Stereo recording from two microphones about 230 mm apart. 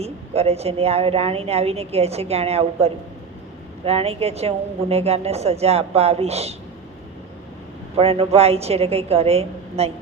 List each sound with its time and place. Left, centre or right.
0.0 s a woman's voice: right
7.9 s a woman's voice: right